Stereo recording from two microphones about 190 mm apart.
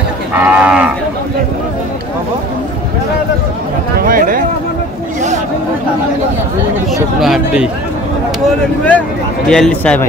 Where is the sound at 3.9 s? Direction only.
50° right (ahead or behind).